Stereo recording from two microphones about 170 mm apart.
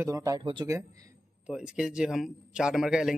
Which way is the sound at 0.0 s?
20° right (ahead or behind).